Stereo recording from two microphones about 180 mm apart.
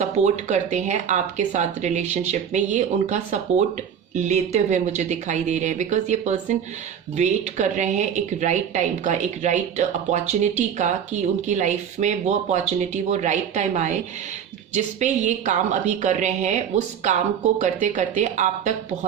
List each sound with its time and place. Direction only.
0.0 s speech: 40° right (ahead or behind)